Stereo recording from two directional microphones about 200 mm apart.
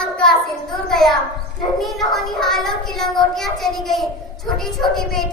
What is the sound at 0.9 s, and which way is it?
Child singing, centre (ahead or behind).